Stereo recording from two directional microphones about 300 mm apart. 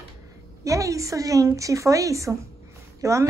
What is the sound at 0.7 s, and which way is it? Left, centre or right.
Speech, centre.